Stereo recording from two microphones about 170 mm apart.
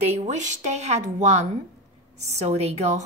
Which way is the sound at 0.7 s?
45° right (ahead or behind).